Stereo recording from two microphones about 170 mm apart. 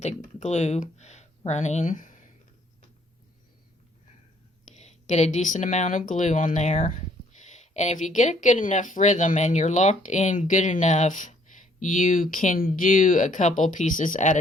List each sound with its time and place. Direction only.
0.0 s speech: 40° left (ahead or behind)
4.7 s speech: 40° left (ahead or behind)